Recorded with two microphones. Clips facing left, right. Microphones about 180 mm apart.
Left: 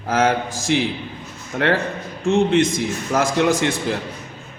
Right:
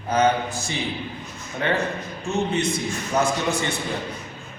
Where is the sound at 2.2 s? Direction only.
90° left.